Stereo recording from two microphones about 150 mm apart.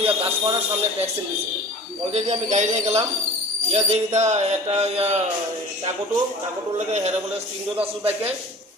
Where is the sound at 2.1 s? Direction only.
45° right (ahead or behind).